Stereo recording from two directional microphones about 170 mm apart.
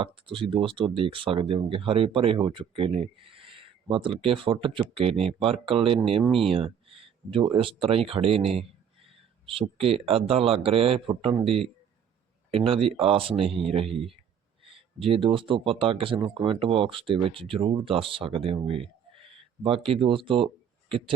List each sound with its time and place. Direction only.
0.0 s speech: 30° right (ahead or behind)
14.6 s a sound: 30° right (ahead or behind)
15.4 s speech: 30° right (ahead or behind)